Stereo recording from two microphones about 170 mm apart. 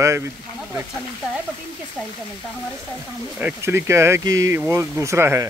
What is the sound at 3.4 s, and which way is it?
Speech, 10° right (ahead or behind).